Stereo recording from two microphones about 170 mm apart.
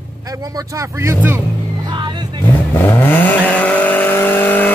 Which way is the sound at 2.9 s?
10° left (ahead or behind).